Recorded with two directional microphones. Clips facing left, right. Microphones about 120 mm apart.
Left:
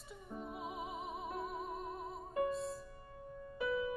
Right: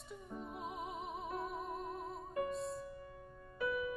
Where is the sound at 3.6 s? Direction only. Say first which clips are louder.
Left 1 dB; 25° left (ahead or behind).